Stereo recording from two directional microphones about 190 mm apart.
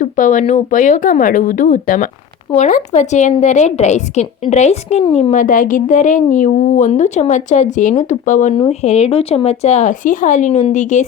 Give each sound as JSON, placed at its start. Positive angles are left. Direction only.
{"t": 0.0, "sound": "a woman's voice", "side_deg": 40}
{"t": 8.5, "sound": "a woman's voice", "side_deg": 30}